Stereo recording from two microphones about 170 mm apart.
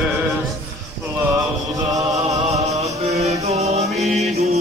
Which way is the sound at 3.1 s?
40° right (ahead or behind).